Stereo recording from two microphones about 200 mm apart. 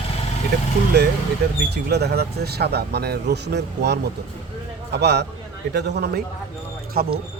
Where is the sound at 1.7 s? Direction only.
55° right (ahead or behind).